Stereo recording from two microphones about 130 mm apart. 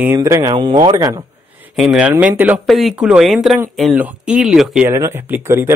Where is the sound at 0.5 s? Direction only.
40° right (ahead or behind).